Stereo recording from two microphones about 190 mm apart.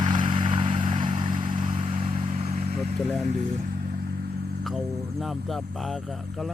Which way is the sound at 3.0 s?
Centre (ahead or behind).